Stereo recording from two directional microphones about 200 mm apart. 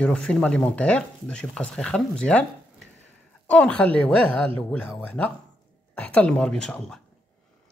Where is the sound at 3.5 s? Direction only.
5° left (ahead or behind).